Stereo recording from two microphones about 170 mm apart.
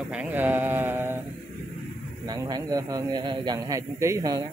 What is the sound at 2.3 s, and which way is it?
A man's voice, 25° right (ahead or behind).